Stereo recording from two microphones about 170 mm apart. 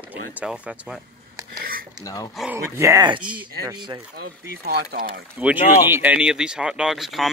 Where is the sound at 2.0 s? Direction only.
20° left (ahead or behind).